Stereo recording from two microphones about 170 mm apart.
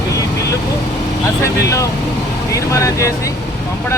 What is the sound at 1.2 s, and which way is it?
Speech, 15° left (ahead or behind).